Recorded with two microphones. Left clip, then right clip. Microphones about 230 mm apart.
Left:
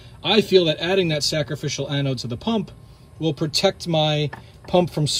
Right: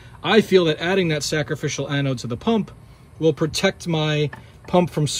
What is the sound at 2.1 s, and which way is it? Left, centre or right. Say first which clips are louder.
Speech: right 1 dB; centre.